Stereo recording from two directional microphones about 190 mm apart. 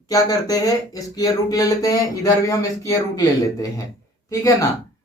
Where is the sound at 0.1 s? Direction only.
20° left (ahead or behind).